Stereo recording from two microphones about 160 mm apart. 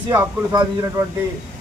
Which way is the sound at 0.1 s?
15° right (ahead or behind).